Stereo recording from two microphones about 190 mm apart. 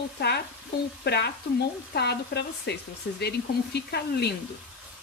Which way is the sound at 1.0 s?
60° left (ahead or behind).